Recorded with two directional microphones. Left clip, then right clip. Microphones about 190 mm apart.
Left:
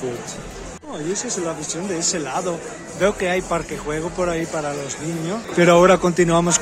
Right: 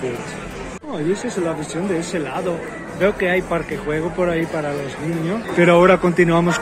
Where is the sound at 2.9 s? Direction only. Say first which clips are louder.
Right 2 dB; 20° left (ahead or behind).